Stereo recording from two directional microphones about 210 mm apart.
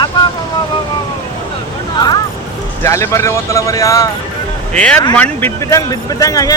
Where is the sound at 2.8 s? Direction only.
15° left (ahead or behind).